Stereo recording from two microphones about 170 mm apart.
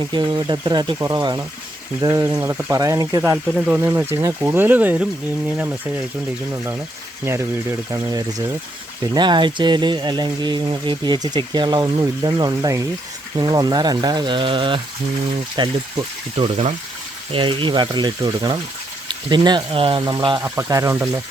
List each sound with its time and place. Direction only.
0.1 s speech: 25° right (ahead or behind)
3.3 s speech: 5° right (ahead or behind)
3.8 s speech: 15° right (ahead or behind)
7.3 s speech: 15° right (ahead or behind)